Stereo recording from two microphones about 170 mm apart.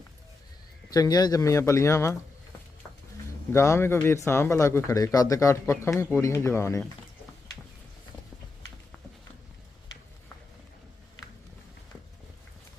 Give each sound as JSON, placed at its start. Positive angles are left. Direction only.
{"t": 0.9, "sound": "speech", "side_deg": 20}
{"t": 3.5, "sound": "speech", "side_deg": 15}